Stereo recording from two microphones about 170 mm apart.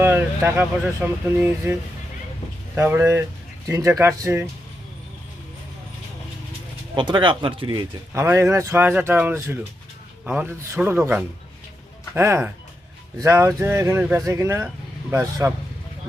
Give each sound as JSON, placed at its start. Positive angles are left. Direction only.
{"t": 0.0, "sound": "speech", "side_deg": -15}
{"t": 6.9, "sound": "speech", "side_deg": -25}
{"t": 8.1, "sound": "speech", "side_deg": -15}